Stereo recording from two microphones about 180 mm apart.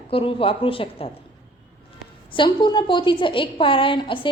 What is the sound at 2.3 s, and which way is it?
A woman's voice, 25° left (ahead or behind).